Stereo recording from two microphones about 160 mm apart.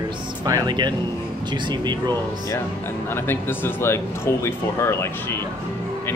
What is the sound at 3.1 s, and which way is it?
Speech, 15° left (ahead or behind).